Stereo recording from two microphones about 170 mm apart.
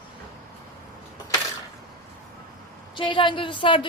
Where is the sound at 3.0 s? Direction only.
30° left (ahead or behind).